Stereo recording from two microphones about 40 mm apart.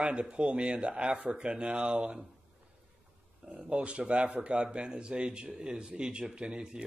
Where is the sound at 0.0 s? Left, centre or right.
Right.